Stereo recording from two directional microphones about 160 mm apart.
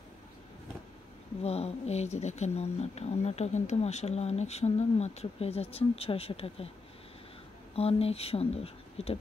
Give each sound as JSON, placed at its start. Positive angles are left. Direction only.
{"t": 1.4, "sound": "speech", "side_deg": 40}
{"t": 7.7, "sound": "speech", "side_deg": 40}